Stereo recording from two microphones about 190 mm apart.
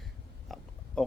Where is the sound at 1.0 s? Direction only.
5° left (ahead or behind).